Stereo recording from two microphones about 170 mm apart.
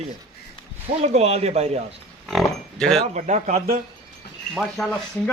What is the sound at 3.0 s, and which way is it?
Speech, 45° right (ahead or behind).